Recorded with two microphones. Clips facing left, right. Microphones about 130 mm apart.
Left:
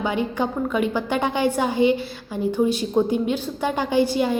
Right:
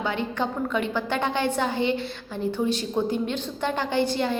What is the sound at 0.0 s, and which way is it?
A woman's voice, 10° left (ahead or behind).